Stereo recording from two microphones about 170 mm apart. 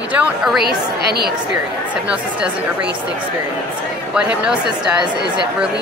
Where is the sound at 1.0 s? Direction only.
70° right (ahead or behind).